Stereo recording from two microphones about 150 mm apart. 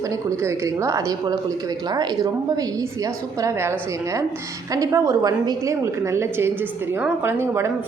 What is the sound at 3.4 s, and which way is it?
A woman's voice, 20° right (ahead or behind).